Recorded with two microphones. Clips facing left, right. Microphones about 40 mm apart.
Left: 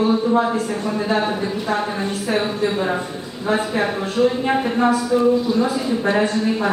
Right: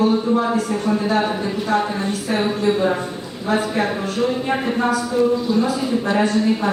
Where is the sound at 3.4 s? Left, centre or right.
Left.